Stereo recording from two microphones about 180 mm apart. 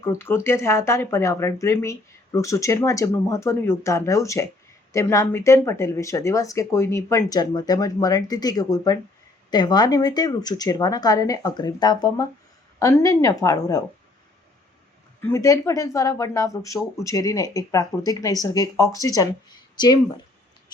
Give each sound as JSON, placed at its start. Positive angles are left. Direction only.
{"t": 0.0, "sound": "speech", "side_deg": 15}
{"t": 15.2, "sound": "speech", "side_deg": 15}